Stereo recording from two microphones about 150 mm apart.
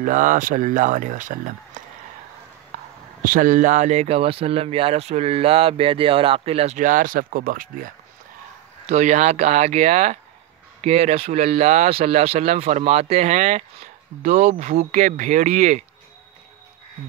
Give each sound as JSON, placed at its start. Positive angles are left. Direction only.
{"t": 0.0, "sound": "speech", "side_deg": -60}
{"t": 3.3, "sound": "speech", "side_deg": -60}
{"t": 8.8, "sound": "speech", "side_deg": -55}